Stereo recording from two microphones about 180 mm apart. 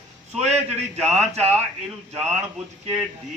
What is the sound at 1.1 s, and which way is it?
Speech, 35° right (ahead or behind).